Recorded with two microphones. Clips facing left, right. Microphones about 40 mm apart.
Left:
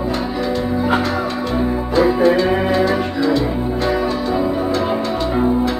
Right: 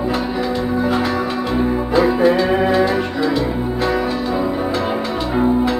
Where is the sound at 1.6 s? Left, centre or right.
Centre.